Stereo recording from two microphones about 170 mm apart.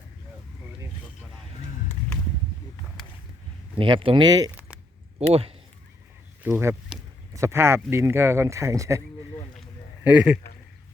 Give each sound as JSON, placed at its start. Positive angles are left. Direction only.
{"t": 3.8, "sound": "speech", "side_deg": -30}
{"t": 5.3, "sound": "speech", "side_deg": -35}
{"t": 6.4, "sound": "speech", "side_deg": -15}
{"t": 10.0, "sound": "speech", "side_deg": -5}